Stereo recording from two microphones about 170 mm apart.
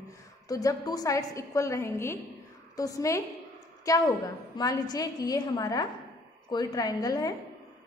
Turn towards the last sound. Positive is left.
turn(degrees=20)  # may be behind; listen again after turning